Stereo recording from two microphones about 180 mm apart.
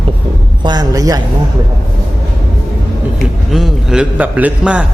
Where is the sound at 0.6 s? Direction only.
20° right (ahead or behind).